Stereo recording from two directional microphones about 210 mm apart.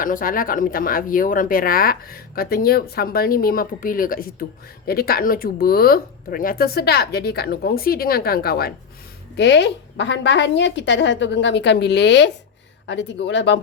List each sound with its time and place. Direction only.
0.0 s a woman's voice: 40° left (ahead or behind); by 13.6 s 60° left (ahead or behind)